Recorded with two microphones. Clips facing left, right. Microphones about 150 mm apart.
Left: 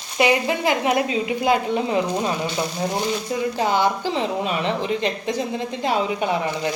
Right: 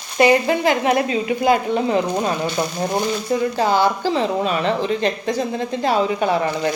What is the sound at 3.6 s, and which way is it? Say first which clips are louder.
A woman's voice: right 1 dB; 20° left (ahead or behind).